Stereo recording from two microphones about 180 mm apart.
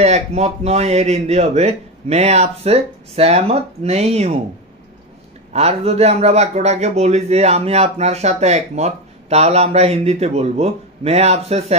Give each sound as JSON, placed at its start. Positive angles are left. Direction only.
{"t": 0.0, "sound": "a man's voice", "side_deg": -35}
{"t": 5.5, "sound": "a man's voice", "side_deg": -35}